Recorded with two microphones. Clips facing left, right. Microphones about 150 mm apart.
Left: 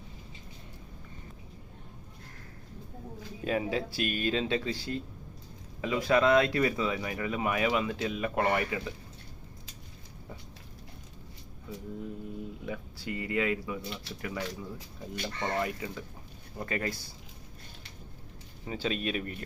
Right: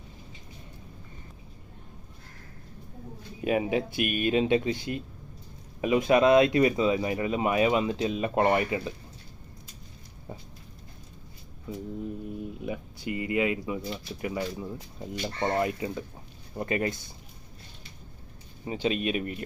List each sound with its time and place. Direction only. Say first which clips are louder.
3.4 s speech: right 4 dB; 15° right (ahead or behind)
12.0 s speech: right 4 dB; 20° right (ahead or behind)
18.6 s speech: right 4 dB; 15° right (ahead or behind)